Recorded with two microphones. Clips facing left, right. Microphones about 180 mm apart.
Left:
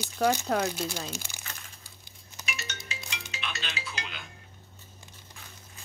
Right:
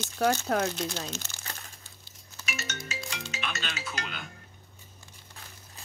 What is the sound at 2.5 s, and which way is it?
Music, 45° right (ahead or behind).